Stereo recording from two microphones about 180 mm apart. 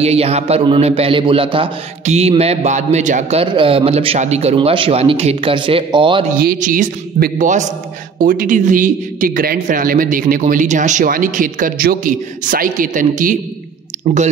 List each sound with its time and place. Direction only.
0.0 s a man's voice: 35° right (ahead or behind)
6.3 s a man's voice: 55° right (ahead or behind)